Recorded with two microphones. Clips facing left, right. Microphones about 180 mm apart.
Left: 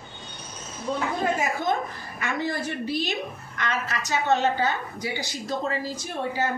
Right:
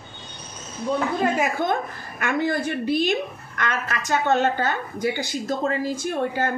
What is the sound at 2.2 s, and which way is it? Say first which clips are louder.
A woman's voice: right 5 dB; 55° right (ahead or behind).